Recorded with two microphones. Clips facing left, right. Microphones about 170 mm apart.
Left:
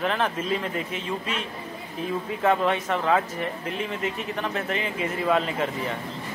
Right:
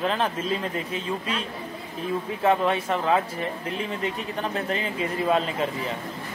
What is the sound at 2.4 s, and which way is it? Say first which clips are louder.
Speech: right 1 dB; 30° right (ahead or behind).